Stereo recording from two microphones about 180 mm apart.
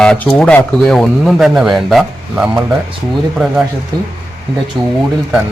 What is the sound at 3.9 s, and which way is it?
Speech, 20° right (ahead or behind).